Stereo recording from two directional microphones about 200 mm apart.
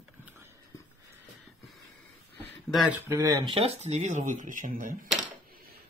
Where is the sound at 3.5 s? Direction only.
30° right (ahead or behind).